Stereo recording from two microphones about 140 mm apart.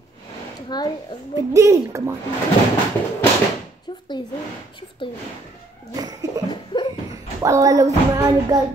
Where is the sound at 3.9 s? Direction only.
35° left (ahead or behind).